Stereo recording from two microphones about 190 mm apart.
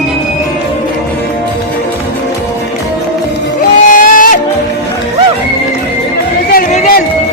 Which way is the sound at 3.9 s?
45° left (ahead or behind).